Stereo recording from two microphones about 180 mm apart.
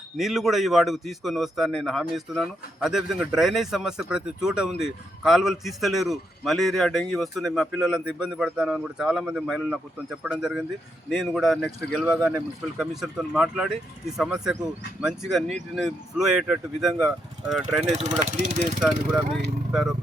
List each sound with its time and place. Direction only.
0.2 s a man's voice: centre (ahead or behind)
18.3 s speech: 45° right (ahead or behind)
18.8 s a man's voice: centre (ahead or behind)